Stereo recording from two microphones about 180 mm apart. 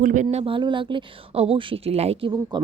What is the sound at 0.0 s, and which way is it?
A woman's voice, 45° right (ahead or behind).